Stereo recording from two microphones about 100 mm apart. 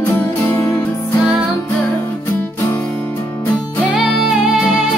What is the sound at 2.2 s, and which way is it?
Music, 15° left (ahead or behind).